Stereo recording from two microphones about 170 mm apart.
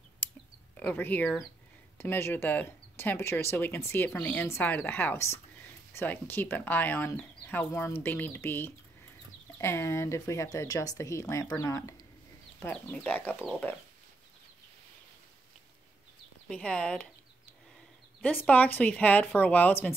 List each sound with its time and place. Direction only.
0.7 s speech: 10° left (ahead or behind)
16.4 s speech: 5° left (ahead or behind)
18.2 s speech: 10° left (ahead or behind)